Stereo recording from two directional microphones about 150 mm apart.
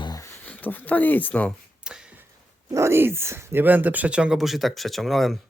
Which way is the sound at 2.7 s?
20° right (ahead or behind).